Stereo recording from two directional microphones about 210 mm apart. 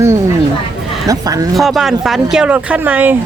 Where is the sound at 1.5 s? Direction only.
Centre (ahead or behind).